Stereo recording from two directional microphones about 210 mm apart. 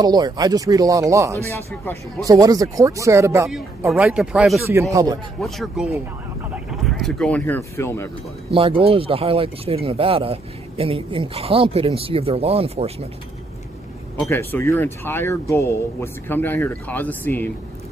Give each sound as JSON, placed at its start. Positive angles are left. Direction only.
{"t": 0.0, "sound": "speech", "side_deg": -20}
{"t": 4.9, "sound": "speech", "side_deg": -20}
{"t": 5.4, "sound": "speech", "side_deg": 0}
{"t": 8.5, "sound": "speech", "side_deg": -25}
{"t": 14.3, "sound": "speech", "side_deg": 10}